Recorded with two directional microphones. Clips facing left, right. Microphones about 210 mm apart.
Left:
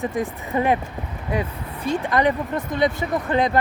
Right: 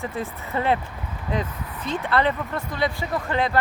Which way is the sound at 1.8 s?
15° left (ahead or behind).